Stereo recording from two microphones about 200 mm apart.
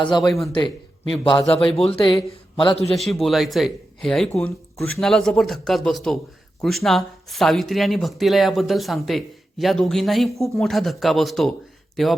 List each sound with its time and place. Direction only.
0.0 s speech: 20° left (ahead or behind)
2.9 s speech: centre (ahead or behind)